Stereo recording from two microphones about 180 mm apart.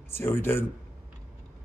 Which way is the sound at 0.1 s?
15° left (ahead or behind).